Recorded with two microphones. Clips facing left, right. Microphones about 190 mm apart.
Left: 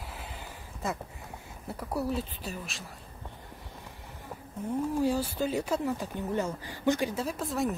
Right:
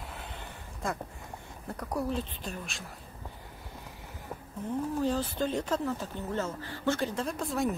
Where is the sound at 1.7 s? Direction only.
5° left (ahead or behind).